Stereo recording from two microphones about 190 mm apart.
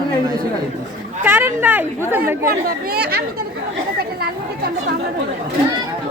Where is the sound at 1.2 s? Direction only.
10° right (ahead or behind).